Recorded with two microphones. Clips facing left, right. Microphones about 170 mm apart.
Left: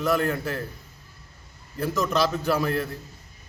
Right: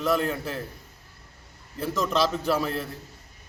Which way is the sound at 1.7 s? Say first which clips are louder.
Left 2 dB; 30° right (ahead or behind).